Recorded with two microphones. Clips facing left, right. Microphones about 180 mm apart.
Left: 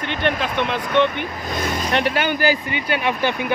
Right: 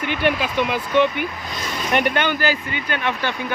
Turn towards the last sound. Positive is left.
turn(degrees=15)  # may be behind; listen again after turning